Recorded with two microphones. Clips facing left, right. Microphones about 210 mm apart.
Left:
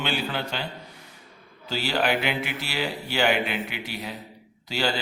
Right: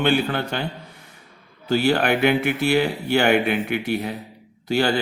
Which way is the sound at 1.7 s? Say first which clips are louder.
Right 6 dB; 55° right (ahead or behind).